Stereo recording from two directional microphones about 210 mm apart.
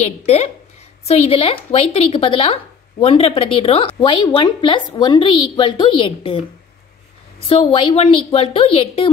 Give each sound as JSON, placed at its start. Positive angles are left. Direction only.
{"t": 0.0, "sound": "a woman's voice", "side_deg": 30}
{"t": 7.4, "sound": "speech", "side_deg": 25}